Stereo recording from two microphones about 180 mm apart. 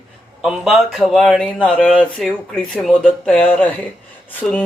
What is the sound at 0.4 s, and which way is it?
Speech, centre (ahead or behind).